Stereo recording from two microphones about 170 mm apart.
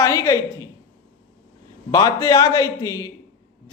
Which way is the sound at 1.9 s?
20° left (ahead or behind).